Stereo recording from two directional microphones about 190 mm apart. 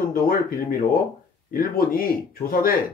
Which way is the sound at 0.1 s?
50° left (ahead or behind).